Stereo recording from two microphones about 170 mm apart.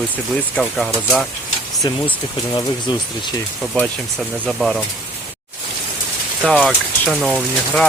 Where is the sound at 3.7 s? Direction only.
5° left (ahead or behind).